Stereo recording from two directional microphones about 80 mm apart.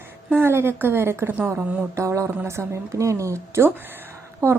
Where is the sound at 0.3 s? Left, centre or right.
Right.